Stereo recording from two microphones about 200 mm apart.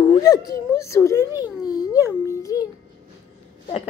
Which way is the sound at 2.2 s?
15° left (ahead or behind).